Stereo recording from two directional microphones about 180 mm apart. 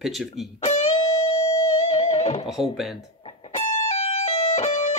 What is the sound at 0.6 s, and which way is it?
Music, 35° left (ahead or behind).